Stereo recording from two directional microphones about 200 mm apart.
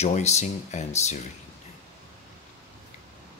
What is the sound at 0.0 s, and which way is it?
Speech, 35° left (ahead or behind).